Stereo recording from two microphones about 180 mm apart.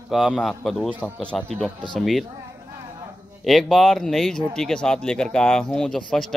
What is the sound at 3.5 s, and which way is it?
Speech, centre (ahead or behind).